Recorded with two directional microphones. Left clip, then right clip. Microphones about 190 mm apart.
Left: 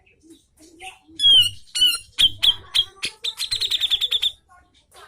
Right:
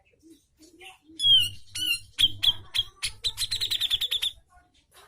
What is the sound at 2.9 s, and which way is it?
Bird, 10° right (ahead or behind).